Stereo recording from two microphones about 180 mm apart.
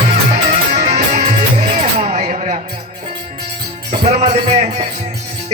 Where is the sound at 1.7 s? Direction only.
35° right (ahead or behind).